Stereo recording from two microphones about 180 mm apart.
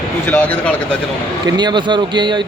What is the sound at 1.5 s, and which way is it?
Speech, 25° right (ahead or behind).